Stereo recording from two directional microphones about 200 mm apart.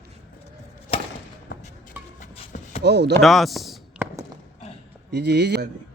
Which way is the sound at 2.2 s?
35° left (ahead or behind).